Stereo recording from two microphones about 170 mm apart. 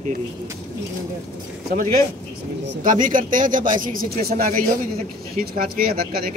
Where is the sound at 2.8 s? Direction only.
50° right (ahead or behind).